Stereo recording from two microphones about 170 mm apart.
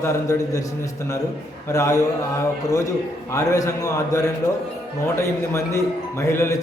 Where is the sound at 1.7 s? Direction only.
20° left (ahead or behind).